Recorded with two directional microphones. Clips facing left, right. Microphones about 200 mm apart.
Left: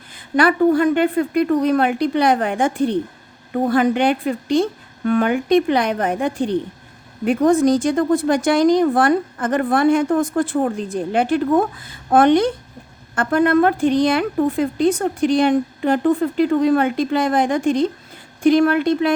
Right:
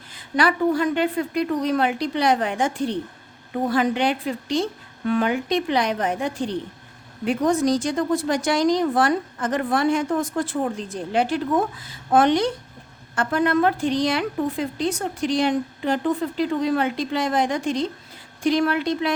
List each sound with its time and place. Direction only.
0.1 s a woman's voice: 55° left (ahead or behind)